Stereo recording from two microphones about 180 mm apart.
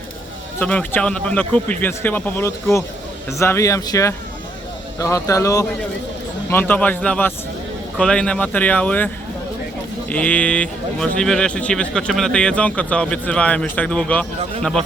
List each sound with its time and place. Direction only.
0.6 s speech: 10° left (ahead or behind)
10.1 s speech: 10° left (ahead or behind)